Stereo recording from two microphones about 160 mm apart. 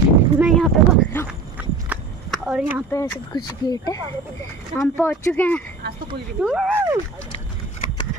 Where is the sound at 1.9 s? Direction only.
10° right (ahead or behind).